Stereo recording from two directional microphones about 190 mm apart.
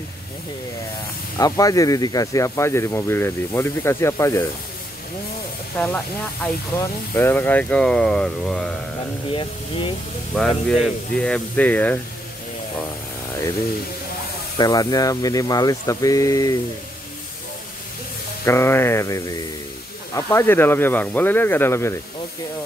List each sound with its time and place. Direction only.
1.4 s speech: 20° left (ahead or behind)
5.8 s speech: 10° left (ahead or behind)
9.3 s speech: 25° left (ahead or behind)
10.7 s speech: 5° left (ahead or behind)
14.6 s speech: 20° left (ahead or behind)
18.4 s speech: 15° left (ahead or behind)